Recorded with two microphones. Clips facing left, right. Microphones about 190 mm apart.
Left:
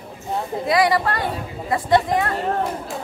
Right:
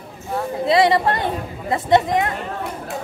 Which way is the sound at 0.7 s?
25° right (ahead or behind).